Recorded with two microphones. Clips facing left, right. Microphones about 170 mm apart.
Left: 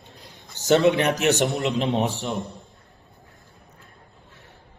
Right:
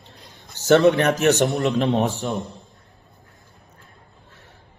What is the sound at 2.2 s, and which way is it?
Speech, centre (ahead or behind).